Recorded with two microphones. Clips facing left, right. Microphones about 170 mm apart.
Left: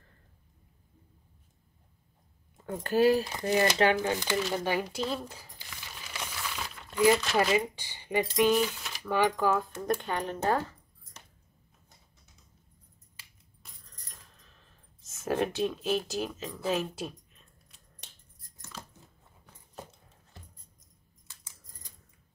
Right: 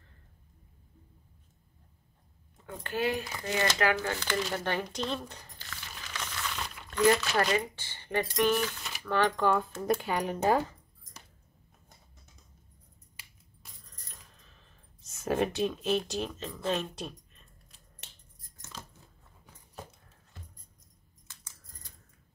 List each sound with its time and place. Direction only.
2.6 s speech: 40° left (ahead or behind)
3.9 s speech: 15° left (ahead or behind)
4.4 s speech: centre (ahead or behind)
14.0 s coin: centre (ahead or behind)
21.3 s coin: 10° left (ahead or behind)